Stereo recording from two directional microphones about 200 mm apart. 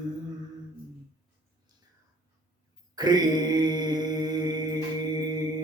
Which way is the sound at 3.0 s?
20° right (ahead or behind).